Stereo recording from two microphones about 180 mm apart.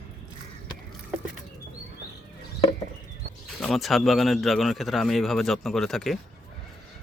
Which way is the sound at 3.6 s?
Centre (ahead or behind).